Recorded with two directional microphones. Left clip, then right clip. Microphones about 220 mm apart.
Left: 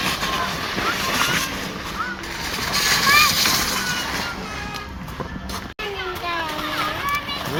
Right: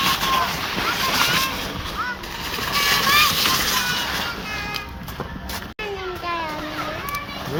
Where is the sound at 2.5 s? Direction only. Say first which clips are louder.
Even; 15° left (ahead or behind).